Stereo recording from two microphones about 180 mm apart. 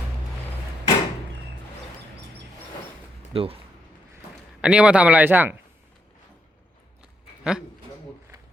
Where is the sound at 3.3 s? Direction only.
30° right (ahead or behind).